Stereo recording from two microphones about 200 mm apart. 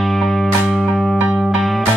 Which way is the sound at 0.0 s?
Centre (ahead or behind).